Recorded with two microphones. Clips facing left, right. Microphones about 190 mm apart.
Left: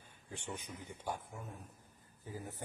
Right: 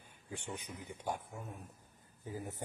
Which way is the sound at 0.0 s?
15° right (ahead or behind).